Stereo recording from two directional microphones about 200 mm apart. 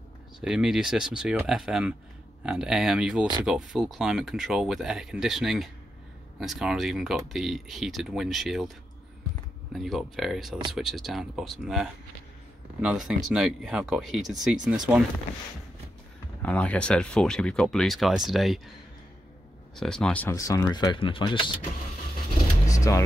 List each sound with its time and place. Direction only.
0.4 s speech: 5° right (ahead or behind)
16.4 s speech: 5° left (ahead or behind)
19.7 s speech: 5° left (ahead or behind); by 21.5 s 25° left (ahead or behind)
22.7 s music: 15° left (ahead or behind)